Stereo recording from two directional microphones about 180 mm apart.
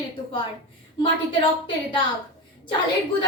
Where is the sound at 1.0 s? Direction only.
30° left (ahead or behind).